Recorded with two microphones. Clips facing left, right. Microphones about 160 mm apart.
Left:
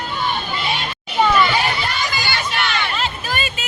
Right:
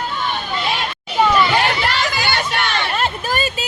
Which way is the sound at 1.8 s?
85° right.